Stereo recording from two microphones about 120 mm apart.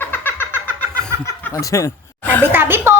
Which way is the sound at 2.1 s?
15° left (ahead or behind).